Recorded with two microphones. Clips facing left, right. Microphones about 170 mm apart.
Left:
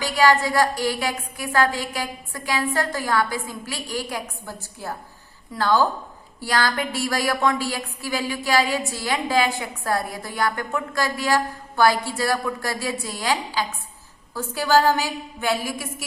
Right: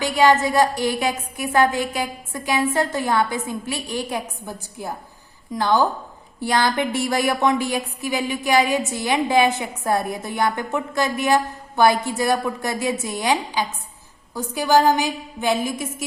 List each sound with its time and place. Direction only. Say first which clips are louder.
0.0 s a woman's voice: right 2 dB; 20° right (ahead or behind)